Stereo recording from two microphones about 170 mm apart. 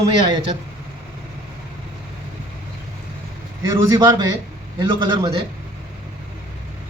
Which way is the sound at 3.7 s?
20° right (ahead or behind).